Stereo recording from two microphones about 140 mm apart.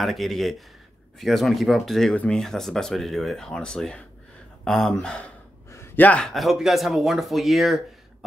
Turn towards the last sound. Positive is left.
turn(degrees=0)  # may be behind; listen again after turning